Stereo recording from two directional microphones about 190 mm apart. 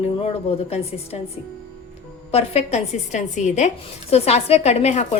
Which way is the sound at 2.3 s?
30° left (ahead or behind).